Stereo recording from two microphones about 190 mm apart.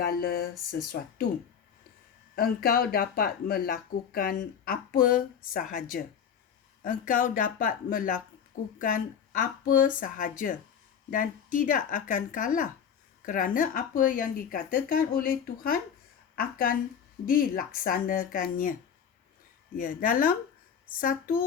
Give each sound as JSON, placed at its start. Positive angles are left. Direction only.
{"t": 0.0, "sound": "speech", "side_deg": 50}
{"t": 2.3, "sound": "a woman's voice", "side_deg": 50}
{"t": 19.7, "sound": "speech", "side_deg": 45}